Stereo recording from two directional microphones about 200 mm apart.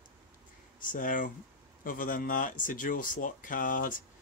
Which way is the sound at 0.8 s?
40° left (ahead or behind).